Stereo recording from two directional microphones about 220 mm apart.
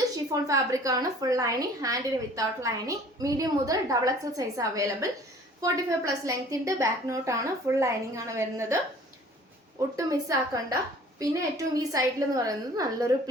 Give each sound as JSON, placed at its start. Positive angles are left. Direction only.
{"t": 0.0, "sound": "a woman's voice", "side_deg": -15}
{"t": 10.1, "sound": "a woman's voice", "side_deg": -15}